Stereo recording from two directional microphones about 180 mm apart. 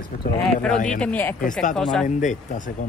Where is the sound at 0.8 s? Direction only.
5° left (ahead or behind).